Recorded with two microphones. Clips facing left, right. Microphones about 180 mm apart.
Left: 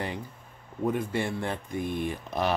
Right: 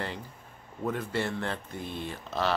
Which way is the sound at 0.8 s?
15° left (ahead or behind).